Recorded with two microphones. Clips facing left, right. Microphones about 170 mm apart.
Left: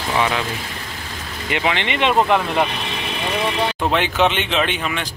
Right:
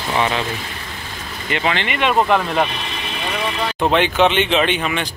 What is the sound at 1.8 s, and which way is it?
Speech, 25° left (ahead or behind).